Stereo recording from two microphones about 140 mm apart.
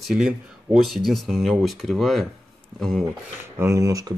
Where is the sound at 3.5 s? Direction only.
20° right (ahead or behind).